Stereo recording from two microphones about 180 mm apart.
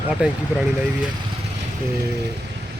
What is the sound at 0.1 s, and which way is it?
Speech, 5° right (ahead or behind).